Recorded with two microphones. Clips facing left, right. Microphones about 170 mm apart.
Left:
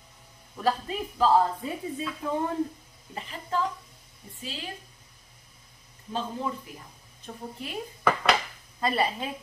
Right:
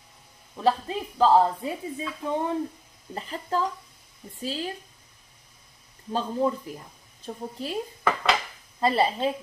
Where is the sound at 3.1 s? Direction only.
40° right (ahead or behind).